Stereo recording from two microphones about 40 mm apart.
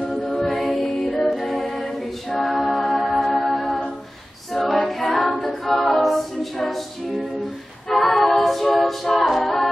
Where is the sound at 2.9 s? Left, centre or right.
Centre.